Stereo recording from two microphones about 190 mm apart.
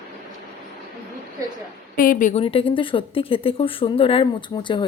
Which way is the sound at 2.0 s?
45° left (ahead or behind).